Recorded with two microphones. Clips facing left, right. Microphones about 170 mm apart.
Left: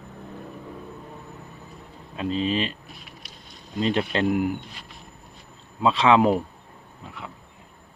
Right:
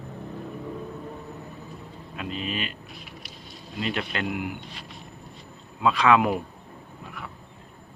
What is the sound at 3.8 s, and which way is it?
Speech, 30° left (ahead or behind).